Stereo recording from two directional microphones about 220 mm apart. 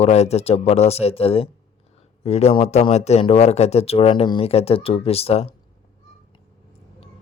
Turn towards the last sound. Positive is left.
turn(degrees=25)  # may be behind; listen again after turning